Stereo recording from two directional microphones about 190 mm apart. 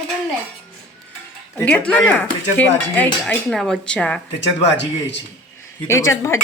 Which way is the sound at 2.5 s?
10° left (ahead or behind).